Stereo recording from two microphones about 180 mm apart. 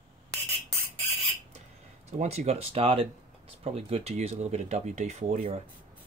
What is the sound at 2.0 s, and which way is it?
Speech, 35° right (ahead or behind).